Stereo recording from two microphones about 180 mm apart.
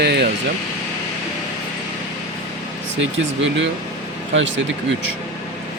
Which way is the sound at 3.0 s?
90° right.